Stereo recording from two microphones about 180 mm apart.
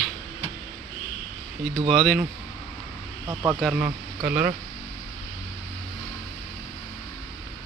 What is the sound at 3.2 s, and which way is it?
Speech, 15° right (ahead or behind).